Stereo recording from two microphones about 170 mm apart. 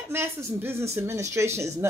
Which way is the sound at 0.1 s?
15° right (ahead or behind).